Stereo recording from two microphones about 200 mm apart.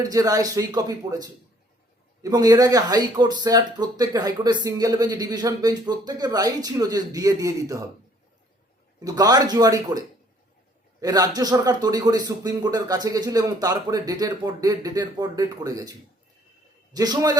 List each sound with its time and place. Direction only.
0.0 s speech: 15° right (ahead or behind)
9.0 s speech: 20° right (ahead or behind)
11.0 s speech: 20° right (ahead or behind)